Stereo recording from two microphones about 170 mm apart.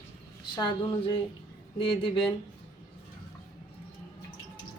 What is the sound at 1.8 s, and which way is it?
Speech, 30° left (ahead or behind).